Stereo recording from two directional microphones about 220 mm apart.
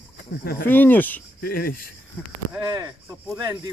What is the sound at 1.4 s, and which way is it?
Speech, 40° left (ahead or behind).